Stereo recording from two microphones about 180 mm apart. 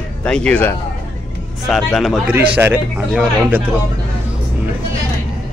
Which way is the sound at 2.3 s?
10° right (ahead or behind).